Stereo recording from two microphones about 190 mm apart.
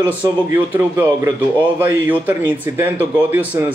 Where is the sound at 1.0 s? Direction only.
15° right (ahead or behind).